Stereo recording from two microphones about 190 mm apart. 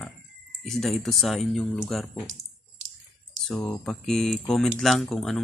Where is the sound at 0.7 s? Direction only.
Centre (ahead or behind).